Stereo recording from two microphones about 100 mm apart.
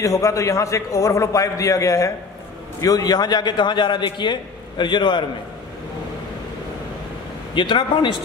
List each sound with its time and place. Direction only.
0.0 s a man's voice: 35° left (ahead or behind); by 5.2 s 50° left (ahead or behind)
7.5 s a man's voice: 55° left (ahead or behind)